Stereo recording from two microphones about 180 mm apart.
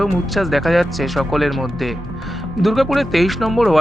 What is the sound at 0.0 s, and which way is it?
Speech, centre (ahead or behind).